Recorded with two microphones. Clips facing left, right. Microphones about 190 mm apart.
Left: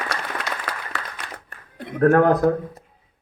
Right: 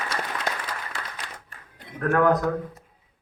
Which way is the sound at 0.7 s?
60° left (ahead or behind).